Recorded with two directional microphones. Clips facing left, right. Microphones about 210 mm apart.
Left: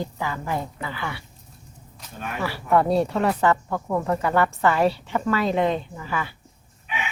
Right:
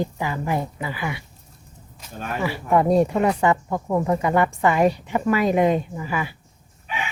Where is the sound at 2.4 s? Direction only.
15° right (ahead or behind).